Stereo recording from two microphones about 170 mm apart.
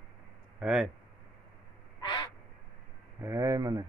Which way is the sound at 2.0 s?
25° left (ahead or behind).